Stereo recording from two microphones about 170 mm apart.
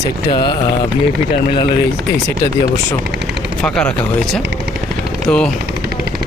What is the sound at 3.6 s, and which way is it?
Speech, 5° left (ahead or behind).